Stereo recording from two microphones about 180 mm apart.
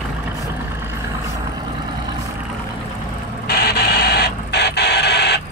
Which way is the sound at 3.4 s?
65° left (ahead or behind).